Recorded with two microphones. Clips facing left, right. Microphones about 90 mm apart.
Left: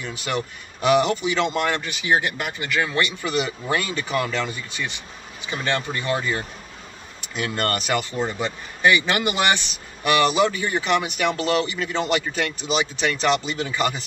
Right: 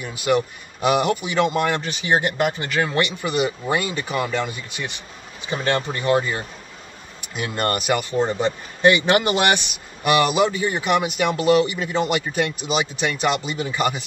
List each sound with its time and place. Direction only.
0.0 s speech: 15° right (ahead or behind)
5.5 s speech: 30° right (ahead or behind); by 8.2 s 15° right (ahead or behind)
9.2 s speech: 15° right (ahead or behind)